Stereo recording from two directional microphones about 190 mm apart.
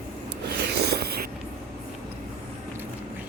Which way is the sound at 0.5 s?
60° right (ahead or behind).